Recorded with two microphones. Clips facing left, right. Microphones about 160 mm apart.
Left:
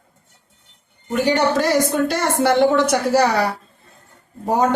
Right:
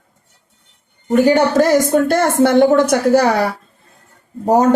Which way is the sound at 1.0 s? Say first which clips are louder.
Right 6 dB; 45° right (ahead or behind).